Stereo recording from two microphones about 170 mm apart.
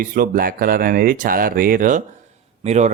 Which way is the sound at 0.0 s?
55° right (ahead or behind).